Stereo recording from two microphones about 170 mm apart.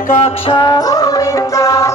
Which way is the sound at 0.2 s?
30° left (ahead or behind).